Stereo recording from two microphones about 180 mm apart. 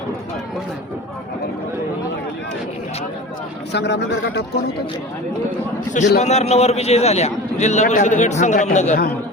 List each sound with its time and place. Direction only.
3.7 s a man's voice: 70° left (ahead or behind)
6.1 s a man's voice: 40° left (ahead or behind)